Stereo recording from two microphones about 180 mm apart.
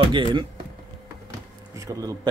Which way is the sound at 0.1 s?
25° right (ahead or behind).